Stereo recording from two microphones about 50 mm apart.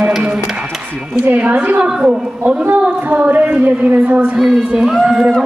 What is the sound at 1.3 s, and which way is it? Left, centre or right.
Speech, right.